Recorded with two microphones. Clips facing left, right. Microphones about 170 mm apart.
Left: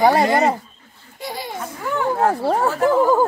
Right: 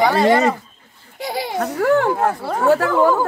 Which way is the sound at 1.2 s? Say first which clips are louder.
Right 6 dB; 85° right.